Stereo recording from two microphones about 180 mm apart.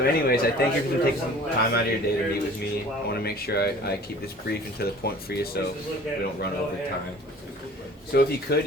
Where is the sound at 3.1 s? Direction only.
60° left (ahead or behind).